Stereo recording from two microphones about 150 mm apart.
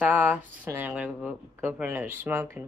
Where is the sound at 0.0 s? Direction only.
10° right (ahead or behind).